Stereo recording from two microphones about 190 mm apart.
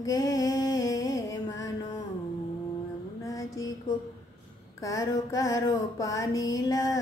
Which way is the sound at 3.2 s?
20° left (ahead or behind).